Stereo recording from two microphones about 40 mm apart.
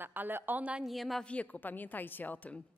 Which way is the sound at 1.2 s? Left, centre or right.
Left.